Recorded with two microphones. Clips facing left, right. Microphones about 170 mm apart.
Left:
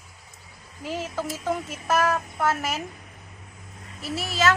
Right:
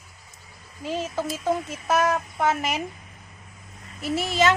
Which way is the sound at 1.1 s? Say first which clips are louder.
Right 3 dB; 15° right (ahead or behind).